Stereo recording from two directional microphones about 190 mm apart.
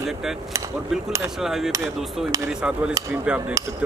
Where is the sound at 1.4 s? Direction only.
Centre (ahead or behind).